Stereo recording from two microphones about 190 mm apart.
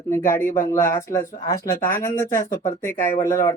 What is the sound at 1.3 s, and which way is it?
Speech, 50° left (ahead or behind).